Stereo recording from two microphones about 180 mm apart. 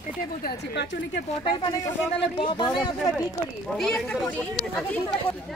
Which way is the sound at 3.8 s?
5° left (ahead or behind).